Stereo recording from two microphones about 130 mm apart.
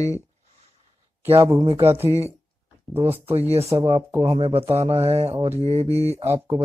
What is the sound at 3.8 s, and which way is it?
Music, 25° right (ahead or behind).